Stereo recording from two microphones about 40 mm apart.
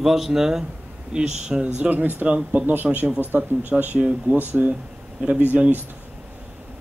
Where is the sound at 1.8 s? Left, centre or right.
Right.